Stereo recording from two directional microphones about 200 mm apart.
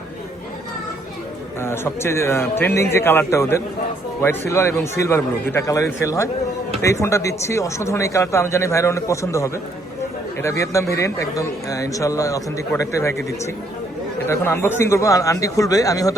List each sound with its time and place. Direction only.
1.6 s a man's voice: 10° left (ahead or behind)
14.3 s a man's voice: 10° left (ahead or behind)